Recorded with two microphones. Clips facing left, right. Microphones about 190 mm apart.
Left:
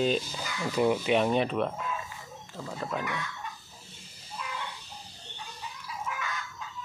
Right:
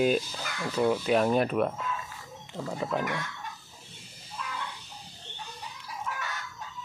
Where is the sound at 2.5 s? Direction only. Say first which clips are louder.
Right 4 dB; 15° right (ahead or behind).